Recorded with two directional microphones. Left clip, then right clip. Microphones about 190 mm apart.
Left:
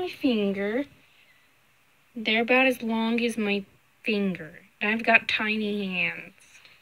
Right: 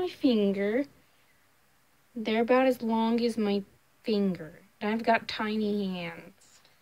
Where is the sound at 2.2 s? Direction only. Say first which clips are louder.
Left 3 dB; 5° right (ahead or behind).